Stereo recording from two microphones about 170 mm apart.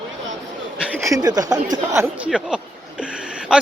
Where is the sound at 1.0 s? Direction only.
20° right (ahead or behind).